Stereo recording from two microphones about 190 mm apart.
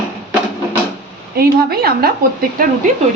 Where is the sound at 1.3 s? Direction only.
55° right (ahead or behind).